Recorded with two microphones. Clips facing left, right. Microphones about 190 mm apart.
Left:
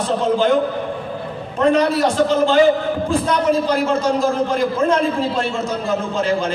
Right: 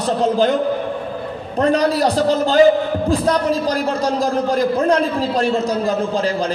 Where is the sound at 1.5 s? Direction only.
35° right (ahead or behind).